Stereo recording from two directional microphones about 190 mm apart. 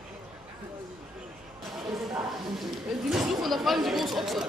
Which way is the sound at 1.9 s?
Centre (ahead or behind).